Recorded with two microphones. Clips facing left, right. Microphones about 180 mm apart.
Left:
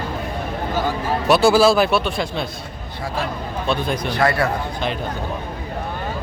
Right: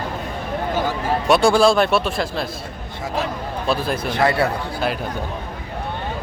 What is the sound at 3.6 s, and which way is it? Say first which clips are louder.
Speech: even; 5° right (ahead or behind).